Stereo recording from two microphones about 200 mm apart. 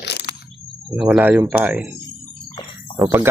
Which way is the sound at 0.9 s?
5° right (ahead or behind).